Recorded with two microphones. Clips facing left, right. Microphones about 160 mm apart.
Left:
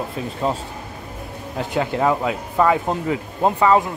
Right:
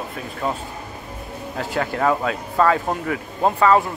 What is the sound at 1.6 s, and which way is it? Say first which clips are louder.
Speech: left 2 dB; 20° left (ahead or behind).